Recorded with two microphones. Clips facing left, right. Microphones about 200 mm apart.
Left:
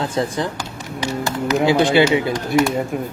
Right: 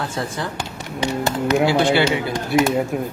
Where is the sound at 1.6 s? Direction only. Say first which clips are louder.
Left 4 dB; 20° left (ahead or behind).